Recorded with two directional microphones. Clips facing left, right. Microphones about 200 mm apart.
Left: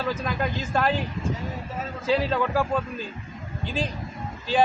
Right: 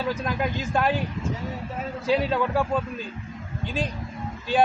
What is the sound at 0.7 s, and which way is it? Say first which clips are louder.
Speech: even; 5° right (ahead or behind).